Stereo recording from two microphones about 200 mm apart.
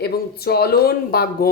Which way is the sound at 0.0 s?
50° left (ahead or behind).